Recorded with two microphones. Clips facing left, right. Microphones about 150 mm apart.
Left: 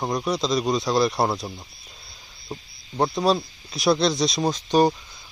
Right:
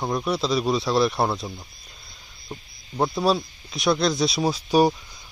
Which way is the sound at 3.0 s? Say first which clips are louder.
Left 1 dB; centre (ahead or behind).